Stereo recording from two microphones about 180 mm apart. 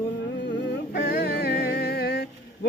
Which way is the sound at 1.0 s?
60° left (ahead or behind).